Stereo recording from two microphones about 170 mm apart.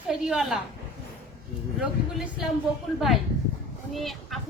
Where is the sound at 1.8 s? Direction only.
5° right (ahead or behind).